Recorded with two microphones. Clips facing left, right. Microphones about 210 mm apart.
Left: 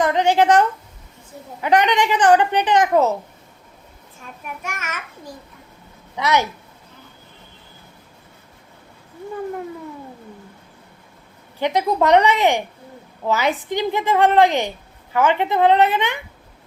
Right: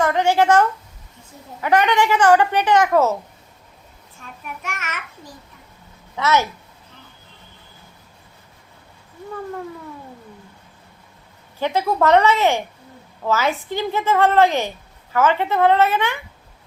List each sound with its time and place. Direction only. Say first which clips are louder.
0.0 s a child's voice: left 1 dB; 20° left (ahead or behind)
1.6 s a woman's voice: even; 20° left (ahead or behind)
4.6 s a child's voice: even; 10° left (ahead or behind)
11.6 s a woman's voice: even; 15° left (ahead or behind)